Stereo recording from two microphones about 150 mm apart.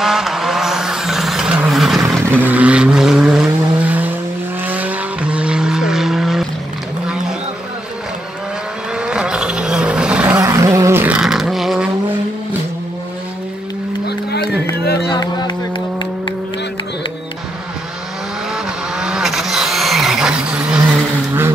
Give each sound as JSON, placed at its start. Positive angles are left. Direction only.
{"t": 0.0, "sound": "vehicle", "side_deg": -5}
{"t": 8.9, "sound": "vehicle", "side_deg": -5}
{"t": 10.4, "sound": "a sound", "side_deg": -20}
{"t": 14.0, "sound": "a sound", "side_deg": 90}
{"t": 14.8, "sound": "music", "side_deg": 90}
{"t": 15.1, "sound": "music", "side_deg": 25}
{"t": 18.9, "sound": "vehicle", "side_deg": -5}